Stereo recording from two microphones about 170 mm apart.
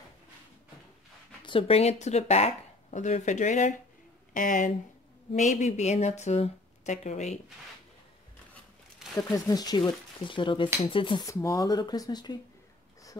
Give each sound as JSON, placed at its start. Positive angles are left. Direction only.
{"t": 1.4, "sound": "a woman's voice", "side_deg": 30}
{"t": 9.1, "sound": "speech", "side_deg": 20}
{"t": 11.2, "sound": "speech", "side_deg": 20}